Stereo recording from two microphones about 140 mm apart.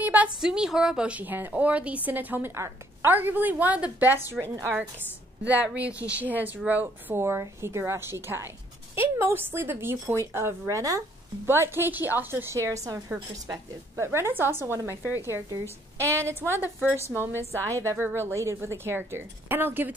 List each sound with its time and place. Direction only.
0.0 s a woman's voice: 10° right (ahead or behind)